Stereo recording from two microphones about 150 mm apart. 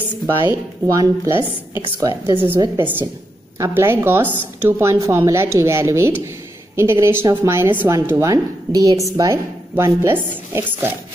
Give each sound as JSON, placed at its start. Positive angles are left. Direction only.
{"t": 0.4, "sound": "a woman's voice", "side_deg": -20}
{"t": 2.6, "sound": "a woman's voice", "side_deg": -25}